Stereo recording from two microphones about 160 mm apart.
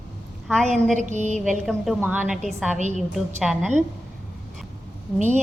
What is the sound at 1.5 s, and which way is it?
A woman's voice, centre (ahead or behind).